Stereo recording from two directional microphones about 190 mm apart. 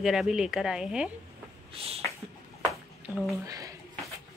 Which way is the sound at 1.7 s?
30° right (ahead or behind).